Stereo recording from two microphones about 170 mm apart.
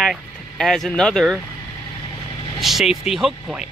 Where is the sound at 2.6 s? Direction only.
Centre (ahead or behind).